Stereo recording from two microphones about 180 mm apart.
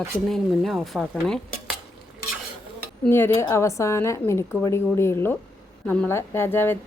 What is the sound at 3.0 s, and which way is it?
A woman's voice, 10° left (ahead or behind).